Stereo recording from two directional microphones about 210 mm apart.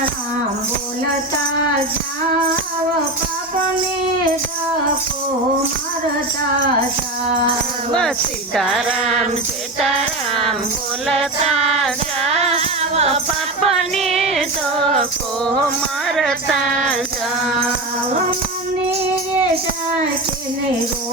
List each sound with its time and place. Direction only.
8.5 s speech: centre (ahead or behind)
11.2 s speech: centre (ahead or behind)
12.3 s music: 30° right (ahead or behind)
13.6 s music: centre (ahead or behind)
16.0 s speech: centre (ahead or behind)